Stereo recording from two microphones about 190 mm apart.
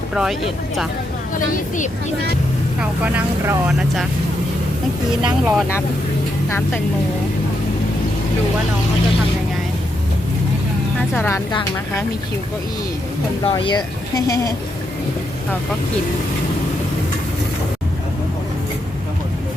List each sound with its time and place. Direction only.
0.1 s speech: 5° right (ahead or behind)
2.8 s speech: 10° right (ahead or behind)
5.2 s speech: 5° right (ahead or behind)
11.1 s speech: 10° left (ahead or behind)
13.4 s speech: 25° left (ahead or behind)